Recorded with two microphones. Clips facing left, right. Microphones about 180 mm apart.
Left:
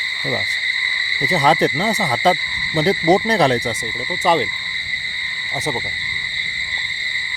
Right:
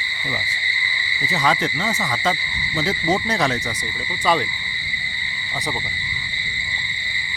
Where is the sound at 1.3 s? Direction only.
35° left (ahead or behind).